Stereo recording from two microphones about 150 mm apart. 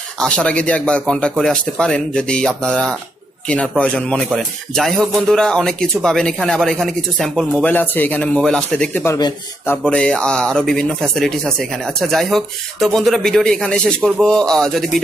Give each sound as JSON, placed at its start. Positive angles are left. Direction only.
{"t": 0.2, "sound": "speech", "side_deg": 5}
{"t": 9.0, "sound": "a man's voice", "side_deg": 20}
{"t": 9.8, "sound": "speech", "side_deg": 5}